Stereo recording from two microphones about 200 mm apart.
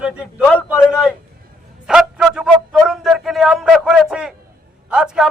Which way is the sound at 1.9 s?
5° right (ahead or behind).